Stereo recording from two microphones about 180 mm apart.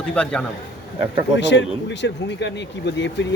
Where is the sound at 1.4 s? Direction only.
85° left.